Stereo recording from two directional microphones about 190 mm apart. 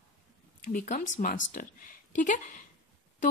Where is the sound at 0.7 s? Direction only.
45° left (ahead or behind).